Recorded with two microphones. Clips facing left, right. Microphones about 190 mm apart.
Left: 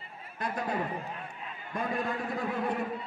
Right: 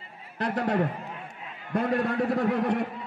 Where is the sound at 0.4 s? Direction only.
75° right (ahead or behind).